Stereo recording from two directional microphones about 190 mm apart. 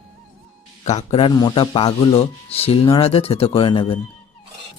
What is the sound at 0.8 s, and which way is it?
Speech, 35° left (ahead or behind).